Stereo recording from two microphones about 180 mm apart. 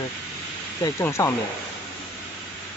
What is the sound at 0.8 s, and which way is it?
Speech, 15° left (ahead or behind).